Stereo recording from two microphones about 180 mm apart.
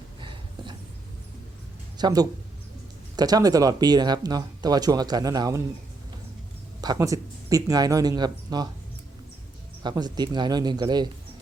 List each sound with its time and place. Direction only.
0.2 s a sound: 25° right (ahead or behind)
2.0 s speech: 20° right (ahead or behind)
6.8 s speech: 20° right (ahead or behind)
9.8 s speech: 25° right (ahead or behind)